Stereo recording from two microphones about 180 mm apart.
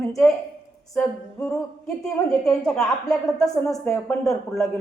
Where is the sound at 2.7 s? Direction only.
5° left (ahead or behind).